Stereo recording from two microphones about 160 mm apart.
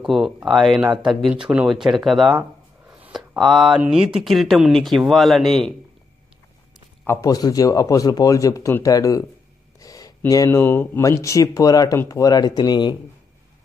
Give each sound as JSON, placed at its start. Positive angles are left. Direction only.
{"t": 0.0, "sound": "speech", "side_deg": 0}
{"t": 7.1, "sound": "speech", "side_deg": 20}